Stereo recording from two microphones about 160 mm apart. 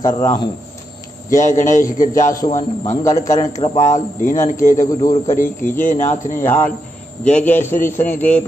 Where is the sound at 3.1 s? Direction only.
45° left (ahead or behind).